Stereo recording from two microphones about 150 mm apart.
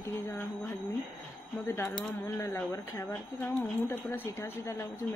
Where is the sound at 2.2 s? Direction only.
20° left (ahead or behind).